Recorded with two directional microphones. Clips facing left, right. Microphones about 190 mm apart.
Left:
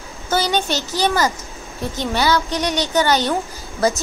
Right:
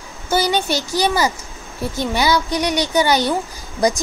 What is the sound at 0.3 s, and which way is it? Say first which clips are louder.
A woman's voice: right 1 dB; 10° right (ahead or behind).